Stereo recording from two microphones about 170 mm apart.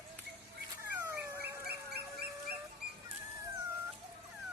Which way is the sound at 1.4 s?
70° right (ahead or behind).